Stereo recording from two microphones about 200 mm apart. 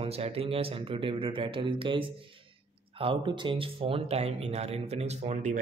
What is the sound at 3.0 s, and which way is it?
Speech, 25° right (ahead or behind).